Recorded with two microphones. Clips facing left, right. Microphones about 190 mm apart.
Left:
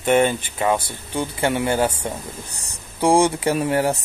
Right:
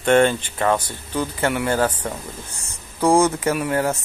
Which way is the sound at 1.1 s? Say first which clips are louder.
Even; 20° left (ahead or behind).